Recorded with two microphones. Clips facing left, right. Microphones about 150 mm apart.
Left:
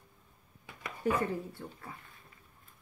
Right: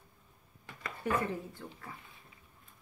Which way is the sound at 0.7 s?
10° left (ahead or behind).